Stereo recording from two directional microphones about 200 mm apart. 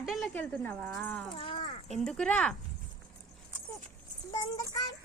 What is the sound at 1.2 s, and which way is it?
Speech, 25° left (ahead or behind).